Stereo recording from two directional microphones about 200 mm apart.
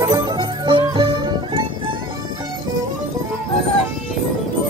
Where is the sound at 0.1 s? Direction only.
20° right (ahead or behind).